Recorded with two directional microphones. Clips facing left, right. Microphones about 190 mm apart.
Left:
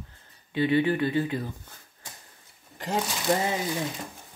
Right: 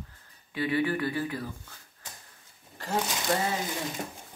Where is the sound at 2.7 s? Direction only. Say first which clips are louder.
Left 1 dB; 20° left (ahead or behind).